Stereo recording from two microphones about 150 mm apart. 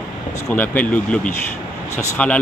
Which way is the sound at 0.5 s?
10° left (ahead or behind).